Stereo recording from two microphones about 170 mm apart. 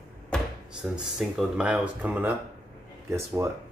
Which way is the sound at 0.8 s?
Centre (ahead or behind).